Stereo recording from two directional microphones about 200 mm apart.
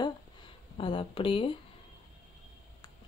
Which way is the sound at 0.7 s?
25° left (ahead or behind).